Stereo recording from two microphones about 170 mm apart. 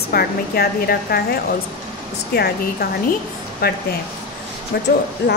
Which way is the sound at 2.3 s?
75° left (ahead or behind).